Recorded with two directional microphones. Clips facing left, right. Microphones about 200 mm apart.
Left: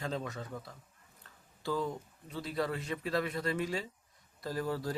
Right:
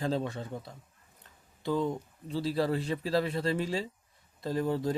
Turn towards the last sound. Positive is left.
turn(degrees=-20)  # may be behind; listen again after turning